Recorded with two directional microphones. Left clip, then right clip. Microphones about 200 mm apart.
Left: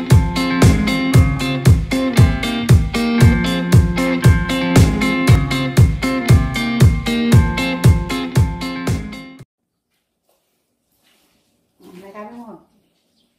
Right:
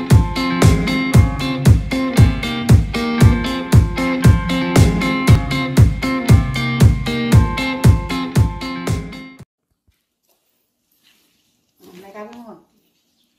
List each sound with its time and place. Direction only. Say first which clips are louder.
0.1 s music: left 1 dB; centre (ahead or behind)